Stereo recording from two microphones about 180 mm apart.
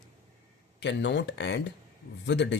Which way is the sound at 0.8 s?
80° left.